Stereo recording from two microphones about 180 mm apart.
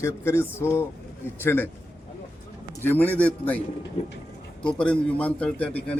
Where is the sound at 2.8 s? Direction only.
10° left (ahead or behind).